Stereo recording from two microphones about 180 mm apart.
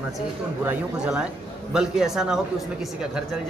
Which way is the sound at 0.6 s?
5° right (ahead or behind).